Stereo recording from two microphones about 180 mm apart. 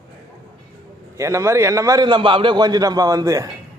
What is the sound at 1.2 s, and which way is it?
A man's voice, 15° right (ahead or behind).